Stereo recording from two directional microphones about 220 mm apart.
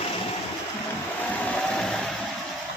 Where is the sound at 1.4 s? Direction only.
5° left (ahead or behind).